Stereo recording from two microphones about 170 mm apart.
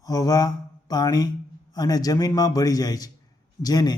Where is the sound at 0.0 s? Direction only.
20° left (ahead or behind).